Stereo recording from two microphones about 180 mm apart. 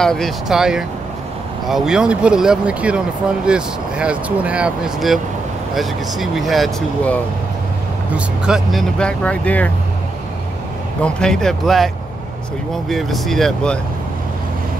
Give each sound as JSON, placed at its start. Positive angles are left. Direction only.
{"t": 0.0, "sound": "speech", "side_deg": 0}
{"t": 11.1, "sound": "speech", "side_deg": 5}